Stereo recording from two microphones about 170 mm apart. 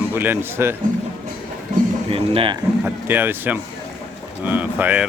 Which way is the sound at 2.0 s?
35° right (ahead or behind).